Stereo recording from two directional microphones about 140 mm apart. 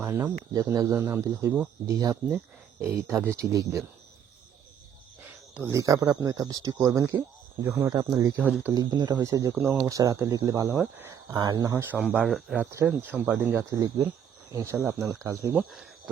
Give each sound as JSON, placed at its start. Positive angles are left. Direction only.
{"t": 0.0, "sound": "speech", "side_deg": -20}
{"t": 5.5, "sound": "speech", "side_deg": -20}
{"t": 8.4, "sound": "speech", "side_deg": -10}
{"t": 8.7, "sound": "speech", "side_deg": -30}
{"t": 11.3, "sound": "speech", "side_deg": -25}
{"t": 12.7, "sound": "speech", "side_deg": -15}